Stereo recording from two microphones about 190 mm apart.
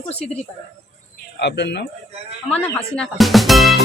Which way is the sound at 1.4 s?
65° left (ahead or behind).